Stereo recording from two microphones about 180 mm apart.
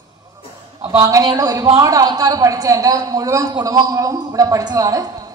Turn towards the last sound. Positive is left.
turn(degrees=-20)  # may be behind; listen again after turning